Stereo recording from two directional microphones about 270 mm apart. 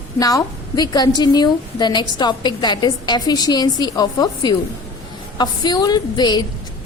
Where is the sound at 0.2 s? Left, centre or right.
Centre.